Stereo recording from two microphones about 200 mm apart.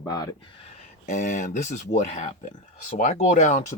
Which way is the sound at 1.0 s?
35° left (ahead or behind).